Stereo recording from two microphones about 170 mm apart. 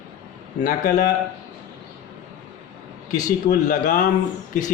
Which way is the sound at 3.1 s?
50° left (ahead or behind).